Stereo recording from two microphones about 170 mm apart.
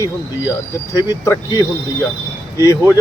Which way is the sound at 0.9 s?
20° left (ahead or behind).